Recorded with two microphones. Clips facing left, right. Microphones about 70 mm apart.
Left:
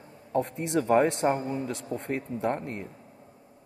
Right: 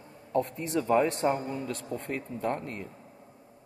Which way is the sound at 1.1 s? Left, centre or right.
Left.